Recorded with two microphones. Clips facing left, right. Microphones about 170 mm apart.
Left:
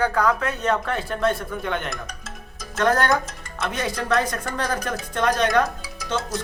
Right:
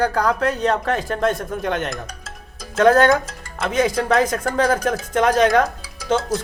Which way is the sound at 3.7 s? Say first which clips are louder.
Right 6 dB; 90° right.